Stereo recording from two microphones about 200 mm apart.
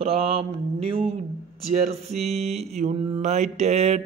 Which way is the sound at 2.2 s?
30° right (ahead or behind).